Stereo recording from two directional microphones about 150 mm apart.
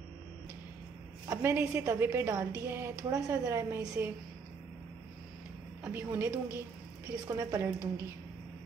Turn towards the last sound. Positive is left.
turn(degrees=-20)  # may be behind; listen again after turning